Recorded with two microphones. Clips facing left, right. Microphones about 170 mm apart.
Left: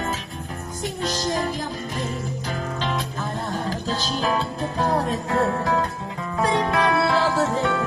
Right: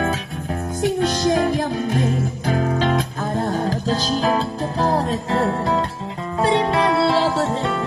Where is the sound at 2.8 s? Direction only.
45° right (ahead or behind).